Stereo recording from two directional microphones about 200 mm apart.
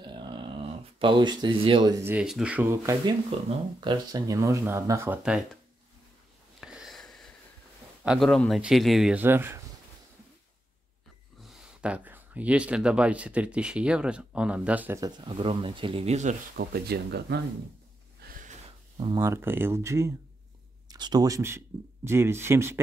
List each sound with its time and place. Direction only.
0.0 s speech: 25° right (ahead or behind); by 5.6 s 5° right (ahead or behind)
6.6 s wheeze: centre (ahead or behind)
8.0 s a man's voice: centre (ahead or behind)
11.4 s speech: 5° right (ahead or behind); by 17.4 s 55° right (ahead or behind)
18.2 s snort: 40° right (ahead or behind)
18.9 s speech: 20° right (ahead or behind)